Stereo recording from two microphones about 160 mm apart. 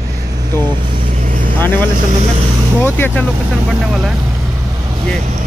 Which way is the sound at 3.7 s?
5° right (ahead or behind).